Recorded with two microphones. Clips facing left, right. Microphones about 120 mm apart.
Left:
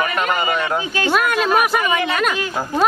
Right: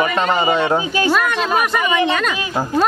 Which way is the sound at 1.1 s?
5° left (ahead or behind).